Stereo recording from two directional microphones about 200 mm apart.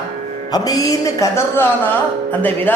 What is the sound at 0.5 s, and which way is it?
A woman's voice, 20° left (ahead or behind).